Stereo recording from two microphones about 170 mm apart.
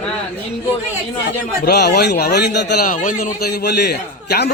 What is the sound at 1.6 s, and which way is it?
Speech, 70° left (ahead or behind).